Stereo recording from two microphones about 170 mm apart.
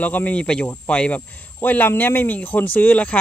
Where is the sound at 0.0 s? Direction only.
10° left (ahead or behind).